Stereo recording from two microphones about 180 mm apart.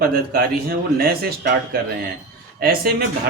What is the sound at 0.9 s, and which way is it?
Speech, 60° right (ahead or behind).